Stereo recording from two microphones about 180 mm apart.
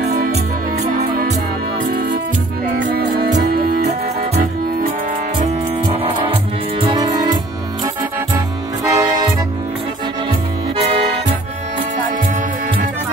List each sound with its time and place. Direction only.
1.9 s music: 50° right (ahead or behind)
3.2 s music: 55° right (ahead or behind)
5.9 s music: 30° right (ahead or behind)
8.8 s music: 20° right (ahead or behind)